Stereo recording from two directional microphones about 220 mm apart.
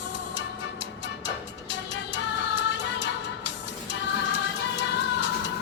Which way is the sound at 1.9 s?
55° left (ahead or behind).